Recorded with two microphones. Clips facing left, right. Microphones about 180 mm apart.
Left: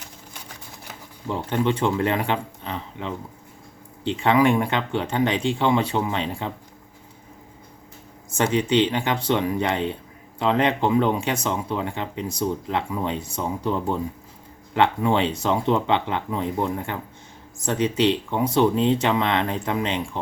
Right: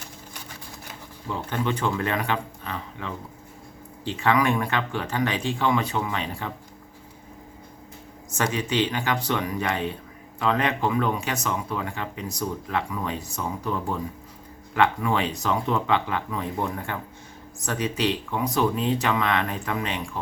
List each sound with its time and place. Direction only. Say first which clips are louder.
1.3 s speech: left 4 dB; 25° left (ahead or behind)
8.4 s speech: left 5 dB; 25° left (ahead or behind)